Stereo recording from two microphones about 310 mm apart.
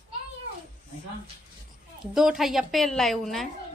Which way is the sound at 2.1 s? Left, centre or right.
Centre.